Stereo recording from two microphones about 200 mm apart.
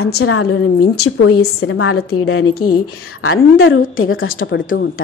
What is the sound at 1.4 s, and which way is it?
Speech, 55° left (ahead or behind).